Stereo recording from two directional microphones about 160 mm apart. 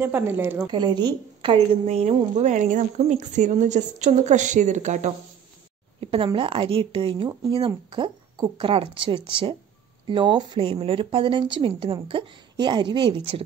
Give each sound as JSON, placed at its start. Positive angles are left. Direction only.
{"t": 0.0, "sound": "speech", "side_deg": -15}
{"t": 0.7, "sound": "a woman's voice", "side_deg": -25}
{"t": 5.9, "sound": "speech", "side_deg": -35}